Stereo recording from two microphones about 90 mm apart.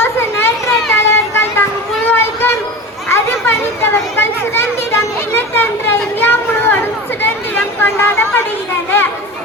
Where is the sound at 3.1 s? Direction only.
25° left (ahead or behind).